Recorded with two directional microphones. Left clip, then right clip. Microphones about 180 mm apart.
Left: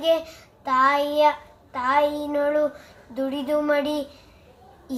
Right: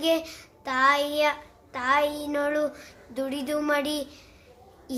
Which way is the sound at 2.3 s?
30° right (ahead or behind).